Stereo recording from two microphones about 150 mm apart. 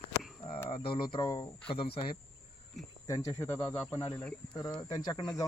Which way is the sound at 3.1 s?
25° left (ahead or behind).